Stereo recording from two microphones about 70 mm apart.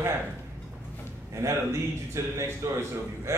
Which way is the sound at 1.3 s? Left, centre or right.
Right.